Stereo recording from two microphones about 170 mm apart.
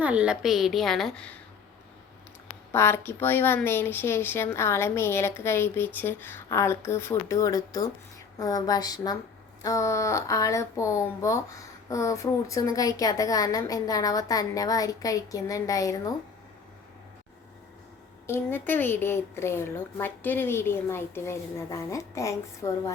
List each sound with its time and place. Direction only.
0.0 s a woman's voice: 5° right (ahead or behind)
2.7 s a woman's voice: 15° left (ahead or behind)
18.3 s a woman's voice: 10° left (ahead or behind)